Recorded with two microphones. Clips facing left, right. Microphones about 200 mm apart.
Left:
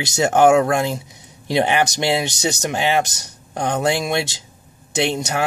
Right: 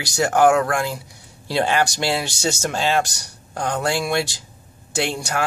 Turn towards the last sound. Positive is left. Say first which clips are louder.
# left 3 dB
turn(degrees=20)  # may be behind; listen again after turning